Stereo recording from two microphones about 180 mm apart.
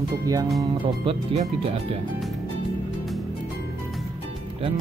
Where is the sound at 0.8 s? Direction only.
30° right (ahead or behind).